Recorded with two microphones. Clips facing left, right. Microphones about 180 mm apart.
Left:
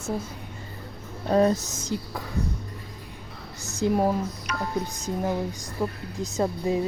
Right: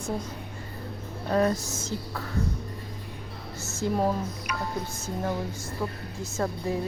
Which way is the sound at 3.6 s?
15° left (ahead or behind).